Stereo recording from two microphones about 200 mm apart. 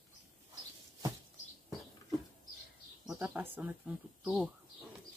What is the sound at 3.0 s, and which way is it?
Speech, 10° right (ahead or behind).